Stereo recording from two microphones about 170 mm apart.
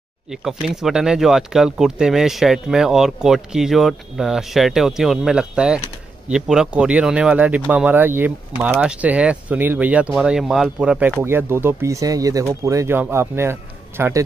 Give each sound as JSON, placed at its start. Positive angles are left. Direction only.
{"t": 0.3, "sound": "speech", "side_deg": 0}